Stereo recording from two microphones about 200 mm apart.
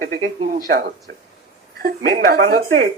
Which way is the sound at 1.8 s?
50° right (ahead or behind).